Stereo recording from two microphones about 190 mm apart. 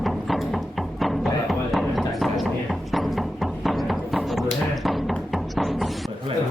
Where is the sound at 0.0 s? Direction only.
Centre (ahead or behind).